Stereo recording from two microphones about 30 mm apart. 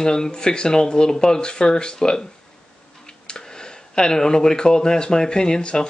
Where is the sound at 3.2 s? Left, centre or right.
Left.